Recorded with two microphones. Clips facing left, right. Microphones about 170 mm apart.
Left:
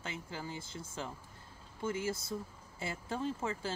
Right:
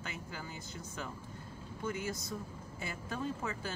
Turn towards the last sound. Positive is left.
turn(degrees=25)  # may be behind; listen again after turning